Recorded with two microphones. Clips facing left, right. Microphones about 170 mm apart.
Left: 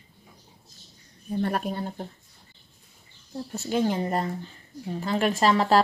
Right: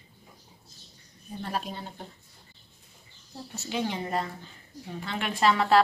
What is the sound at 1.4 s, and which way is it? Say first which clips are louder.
Speech: left 6 dB; 55° left (ahead or behind).